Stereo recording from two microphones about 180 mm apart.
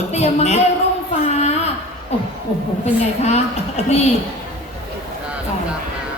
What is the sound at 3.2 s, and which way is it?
Speech, 35° left (ahead or behind).